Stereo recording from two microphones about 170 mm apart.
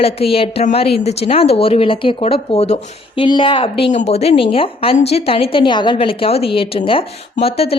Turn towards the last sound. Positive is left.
turn(degrees=35)  # may be behind; listen again after turning